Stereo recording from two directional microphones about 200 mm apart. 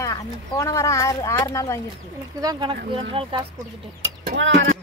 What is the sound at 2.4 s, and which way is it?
Speech, 20° right (ahead or behind).